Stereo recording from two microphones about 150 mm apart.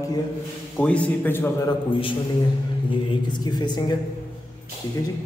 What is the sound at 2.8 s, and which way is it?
A man's voice, 30° left (ahead or behind).